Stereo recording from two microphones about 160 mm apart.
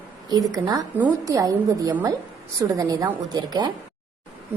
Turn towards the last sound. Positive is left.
turn(degrees=-25)  # may be behind; listen again after turning